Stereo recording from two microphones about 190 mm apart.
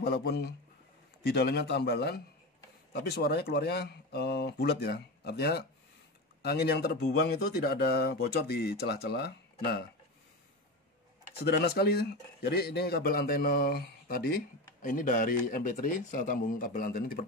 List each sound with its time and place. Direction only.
0.0 s speech: 55° left (ahead or behind)
11.4 s a man's voice: 60° left (ahead or behind)